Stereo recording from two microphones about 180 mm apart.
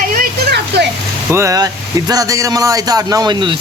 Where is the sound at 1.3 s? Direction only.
15° right (ahead or behind).